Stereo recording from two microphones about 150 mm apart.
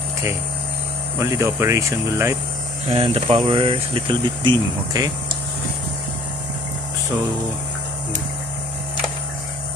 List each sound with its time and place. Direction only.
1.2 s speech: 20° right (ahead or behind)
2.9 s speech: 35° right (ahead or behind)
3.6 s speech: 35° right (ahead or behind)